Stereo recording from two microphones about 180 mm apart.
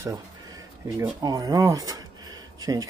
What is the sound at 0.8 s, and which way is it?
Speech, 15° right (ahead or behind).